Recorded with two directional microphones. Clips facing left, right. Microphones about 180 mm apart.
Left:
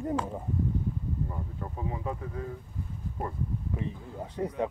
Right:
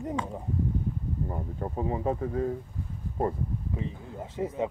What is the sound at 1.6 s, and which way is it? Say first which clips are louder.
Speech: right 7 dB; 35° right (ahead or behind).